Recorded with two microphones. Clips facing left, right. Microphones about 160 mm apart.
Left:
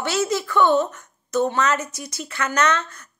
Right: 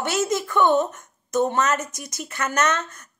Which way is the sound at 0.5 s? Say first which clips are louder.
Left 1 dB; 15° right (ahead or behind).